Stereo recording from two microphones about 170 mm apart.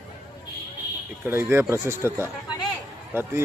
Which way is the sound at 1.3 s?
15° right (ahead or behind).